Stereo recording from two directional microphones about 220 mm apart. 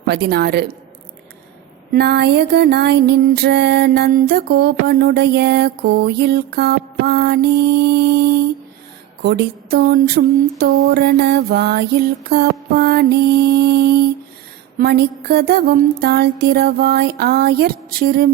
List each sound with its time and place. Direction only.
0.0 s music: 45° right (ahead or behind)
1.9 s music: 50° right (ahead or behind)